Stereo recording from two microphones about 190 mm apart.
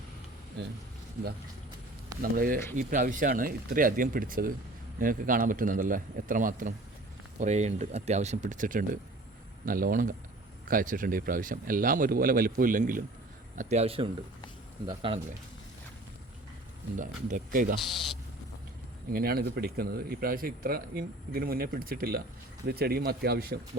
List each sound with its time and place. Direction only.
2.3 s speech: 45° right (ahead or behind); by 15.2 s 25° right (ahead or behind)
17.2 s speech: 45° right (ahead or behind)
19.1 s speech: 55° right (ahead or behind)